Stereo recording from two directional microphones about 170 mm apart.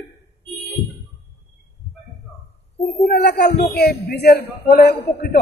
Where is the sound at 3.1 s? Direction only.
70° left (ahead or behind).